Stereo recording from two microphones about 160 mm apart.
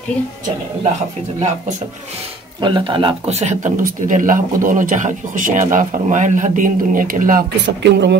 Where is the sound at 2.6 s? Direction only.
30° right (ahead or behind).